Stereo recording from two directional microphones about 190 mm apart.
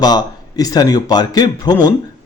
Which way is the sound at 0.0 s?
20° left (ahead or behind).